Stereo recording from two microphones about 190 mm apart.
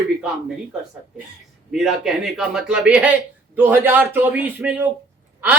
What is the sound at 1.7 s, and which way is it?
A man's voice, centre (ahead or behind).